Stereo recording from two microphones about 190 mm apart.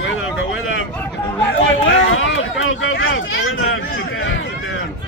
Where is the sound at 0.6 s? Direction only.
90° left.